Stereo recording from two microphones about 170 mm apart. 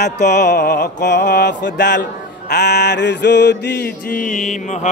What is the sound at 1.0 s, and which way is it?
A man's voice, 80° left.